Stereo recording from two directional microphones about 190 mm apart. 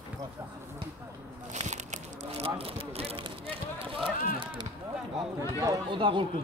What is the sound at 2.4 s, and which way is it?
Speech, 30° right (ahead or behind).